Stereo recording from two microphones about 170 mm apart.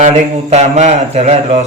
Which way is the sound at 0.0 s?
40° right (ahead or behind).